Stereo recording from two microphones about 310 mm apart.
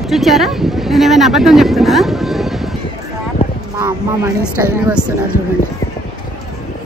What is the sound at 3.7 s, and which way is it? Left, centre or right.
Speech, centre.